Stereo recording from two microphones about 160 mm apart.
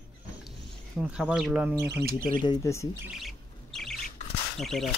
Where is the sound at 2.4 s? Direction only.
20° left (ahead or behind).